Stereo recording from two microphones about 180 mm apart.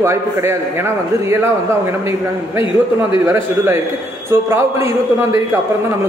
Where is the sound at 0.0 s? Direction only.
15° right (ahead or behind).